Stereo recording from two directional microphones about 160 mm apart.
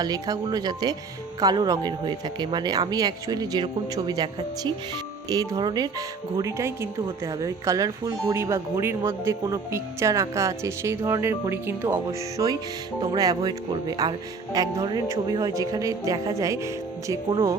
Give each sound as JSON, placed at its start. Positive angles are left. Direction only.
{"t": 0.0, "sound": "speech", "side_deg": -25}
{"t": 12.4, "sound": "speech", "side_deg": -25}